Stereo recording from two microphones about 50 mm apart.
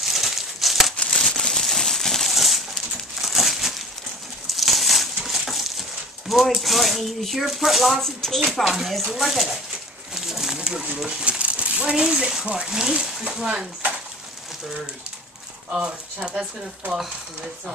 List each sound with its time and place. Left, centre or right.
0.0 s crumpling: centre
0.9 s crumpling: centre
4.5 s a sound: centre
6.6 s speech: centre
8.5 s speech: centre
10.1 s a sound: centre
11.1 s speech: right
15.7 s speech: right